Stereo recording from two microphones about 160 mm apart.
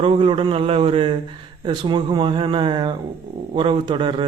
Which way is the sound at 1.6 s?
30° right (ahead or behind).